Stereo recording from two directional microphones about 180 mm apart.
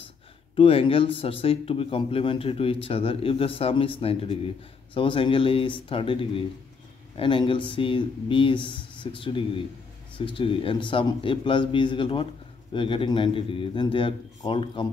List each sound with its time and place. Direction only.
0.6 s a man's voice: 30° left (ahead or behind)